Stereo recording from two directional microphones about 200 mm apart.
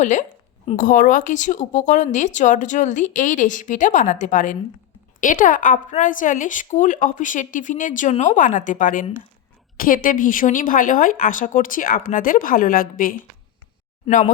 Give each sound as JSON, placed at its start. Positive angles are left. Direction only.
{"t": 0.0, "sound": "a woman's voice", "side_deg": 35}